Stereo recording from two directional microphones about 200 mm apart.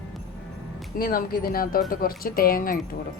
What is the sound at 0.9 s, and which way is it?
Speech, 45° left (ahead or behind).